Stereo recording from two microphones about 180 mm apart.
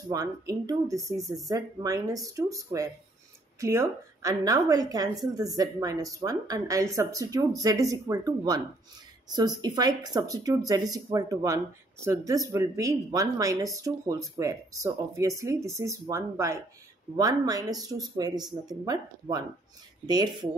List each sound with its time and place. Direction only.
0.1 s speech: 20° right (ahead or behind)